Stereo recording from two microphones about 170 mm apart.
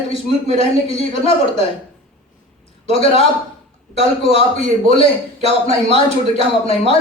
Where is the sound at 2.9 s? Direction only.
35° left (ahead or behind).